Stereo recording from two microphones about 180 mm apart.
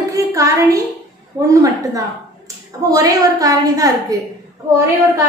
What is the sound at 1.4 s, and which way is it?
A woman's voice, 20° right (ahead or behind).